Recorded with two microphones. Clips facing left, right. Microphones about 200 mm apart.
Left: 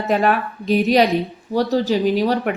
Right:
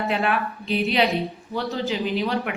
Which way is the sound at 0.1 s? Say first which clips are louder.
Left 6 dB; 40° left (ahead or behind).